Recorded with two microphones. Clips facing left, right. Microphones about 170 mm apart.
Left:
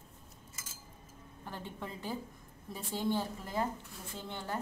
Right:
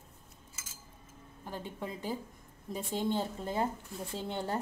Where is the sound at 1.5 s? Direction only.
15° right (ahead or behind); by 4.6 s 30° right (ahead or behind).